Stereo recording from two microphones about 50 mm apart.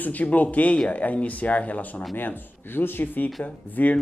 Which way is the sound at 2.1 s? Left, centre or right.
Left.